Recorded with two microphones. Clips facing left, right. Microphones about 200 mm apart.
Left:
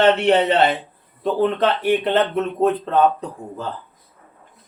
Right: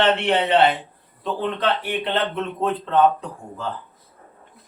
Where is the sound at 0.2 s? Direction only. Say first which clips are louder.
Left 2 dB; 40° left (ahead or behind).